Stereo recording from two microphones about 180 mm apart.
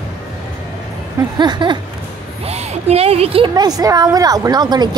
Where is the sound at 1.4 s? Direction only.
25° right (ahead or behind).